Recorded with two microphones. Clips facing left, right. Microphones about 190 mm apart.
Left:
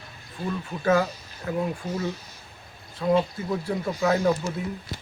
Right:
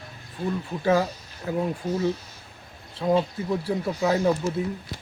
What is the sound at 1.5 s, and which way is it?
Speech, 30° right (ahead or behind).